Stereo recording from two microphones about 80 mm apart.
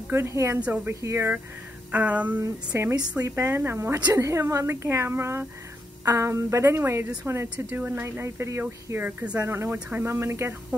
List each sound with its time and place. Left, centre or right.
0.1 s speech: right
1.9 s a sound: centre
2.7 s speech: right